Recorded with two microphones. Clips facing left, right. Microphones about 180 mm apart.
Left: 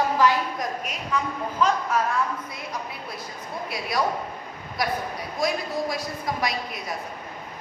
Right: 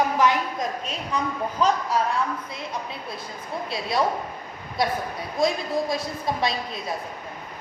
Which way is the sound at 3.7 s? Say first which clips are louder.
Right 2 dB; 25° right (ahead or behind).